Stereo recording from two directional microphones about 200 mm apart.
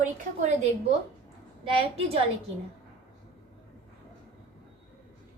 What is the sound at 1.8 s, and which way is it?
Speech, 30° right (ahead or behind).